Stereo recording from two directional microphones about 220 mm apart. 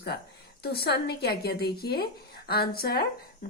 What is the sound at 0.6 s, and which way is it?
Speech, 45° left (ahead or behind).